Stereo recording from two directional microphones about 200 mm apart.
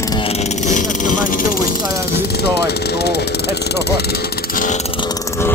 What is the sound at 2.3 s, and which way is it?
Speech, 55° left (ahead or behind).